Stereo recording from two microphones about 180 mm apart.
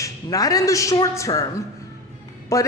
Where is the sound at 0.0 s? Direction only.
20° left (ahead or behind).